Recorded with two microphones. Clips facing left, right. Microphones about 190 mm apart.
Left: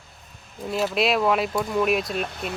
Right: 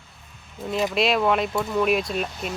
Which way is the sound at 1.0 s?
Centre (ahead or behind).